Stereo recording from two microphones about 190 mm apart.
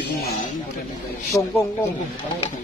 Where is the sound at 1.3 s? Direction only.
20° left (ahead or behind).